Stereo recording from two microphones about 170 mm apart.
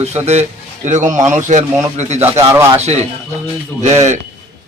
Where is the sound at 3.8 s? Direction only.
40° right (ahead or behind).